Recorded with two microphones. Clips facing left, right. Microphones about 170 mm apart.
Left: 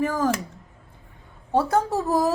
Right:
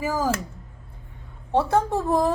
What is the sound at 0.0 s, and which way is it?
Speech, 5° right (ahead or behind).